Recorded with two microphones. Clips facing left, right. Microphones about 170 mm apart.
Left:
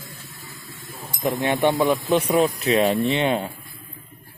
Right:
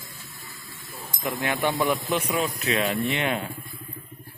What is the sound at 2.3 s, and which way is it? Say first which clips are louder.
Speech: left 7 dB; 35° left (ahead or behind).